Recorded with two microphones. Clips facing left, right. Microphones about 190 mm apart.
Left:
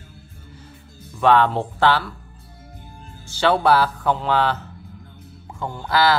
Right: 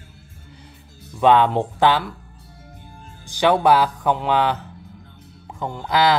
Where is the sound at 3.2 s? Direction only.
15° right (ahead or behind).